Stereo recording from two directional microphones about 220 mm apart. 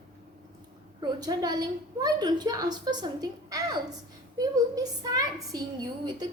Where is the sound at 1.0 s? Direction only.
20° right (ahead or behind).